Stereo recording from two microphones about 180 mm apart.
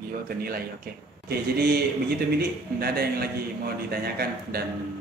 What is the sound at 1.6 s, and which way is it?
Speech, 60° right (ahead or behind).